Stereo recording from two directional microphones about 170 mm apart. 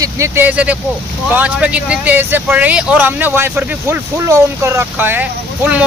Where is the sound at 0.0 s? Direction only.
15° right (ahead or behind).